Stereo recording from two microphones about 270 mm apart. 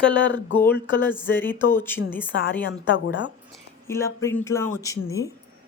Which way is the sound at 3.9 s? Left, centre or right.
Centre.